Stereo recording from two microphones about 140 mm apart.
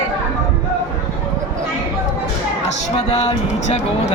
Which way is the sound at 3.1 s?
50° left (ahead or behind).